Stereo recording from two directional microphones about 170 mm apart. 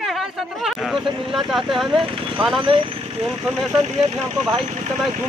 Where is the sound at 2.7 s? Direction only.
30° right (ahead or behind).